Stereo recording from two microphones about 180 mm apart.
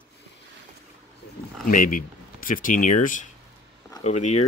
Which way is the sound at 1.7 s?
50° left (ahead or behind).